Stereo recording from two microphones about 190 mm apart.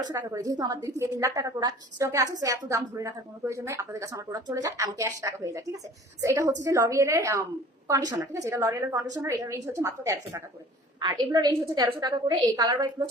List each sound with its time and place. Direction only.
0.1 s a woman's voice: 15° right (ahead or behind)